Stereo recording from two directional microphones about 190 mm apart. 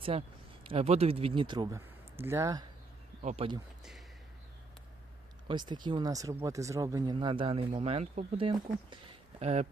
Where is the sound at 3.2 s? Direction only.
40° right (ahead or behind).